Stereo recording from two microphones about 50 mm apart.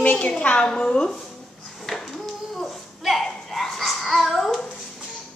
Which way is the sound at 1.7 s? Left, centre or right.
Centre.